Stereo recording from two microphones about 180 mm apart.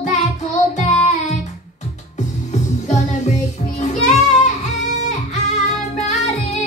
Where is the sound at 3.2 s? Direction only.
40° left (ahead or behind).